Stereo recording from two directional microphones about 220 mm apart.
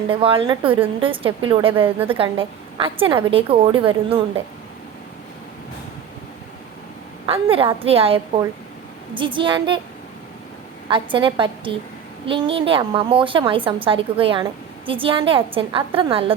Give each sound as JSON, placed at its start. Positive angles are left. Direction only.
{"t": 0.1, "sound": "a woman's voice", "side_deg": -25}
{"t": 7.3, "sound": "a woman's voice", "side_deg": -25}
{"t": 10.8, "sound": "a woman's voice", "side_deg": -20}